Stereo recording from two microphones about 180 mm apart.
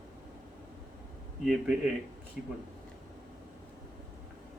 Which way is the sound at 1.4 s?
5° right (ahead or behind).